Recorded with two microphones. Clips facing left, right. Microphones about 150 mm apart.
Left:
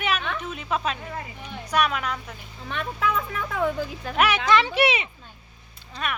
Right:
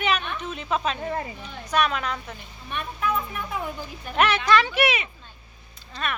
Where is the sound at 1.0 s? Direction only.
40° right (ahead or behind).